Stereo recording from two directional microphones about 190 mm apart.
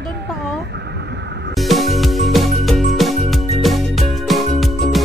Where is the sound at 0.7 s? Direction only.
65° right (ahead or behind).